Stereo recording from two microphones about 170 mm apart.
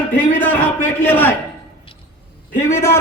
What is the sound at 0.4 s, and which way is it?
Speech, 10° left (ahead or behind).